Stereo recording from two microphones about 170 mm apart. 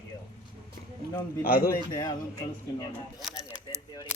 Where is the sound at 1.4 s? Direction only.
60° left (ahead or behind).